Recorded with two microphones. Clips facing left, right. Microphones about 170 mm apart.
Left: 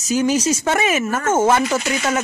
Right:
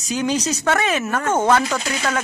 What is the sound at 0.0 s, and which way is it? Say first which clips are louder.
Speech: left 4 dB; centre (ahead or behind).